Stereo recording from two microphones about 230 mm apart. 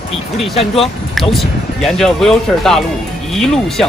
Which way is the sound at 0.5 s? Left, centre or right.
Left.